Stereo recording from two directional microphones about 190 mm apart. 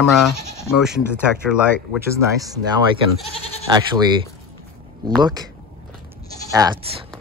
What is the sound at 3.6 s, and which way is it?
Speech, 20° right (ahead or behind).